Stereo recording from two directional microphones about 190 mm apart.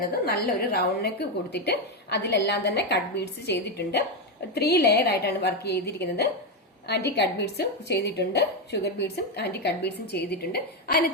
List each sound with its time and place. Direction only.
0.3 s speech: 55° left (ahead or behind)